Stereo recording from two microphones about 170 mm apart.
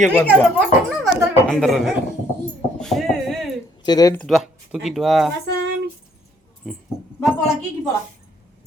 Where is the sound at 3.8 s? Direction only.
25° left (ahead or behind).